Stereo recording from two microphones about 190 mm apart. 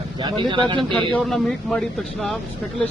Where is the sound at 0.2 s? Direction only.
25° right (ahead or behind).